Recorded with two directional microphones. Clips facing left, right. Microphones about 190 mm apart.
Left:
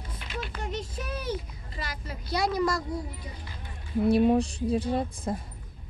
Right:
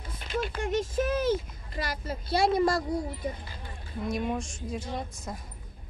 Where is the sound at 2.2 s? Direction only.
25° right (ahead or behind).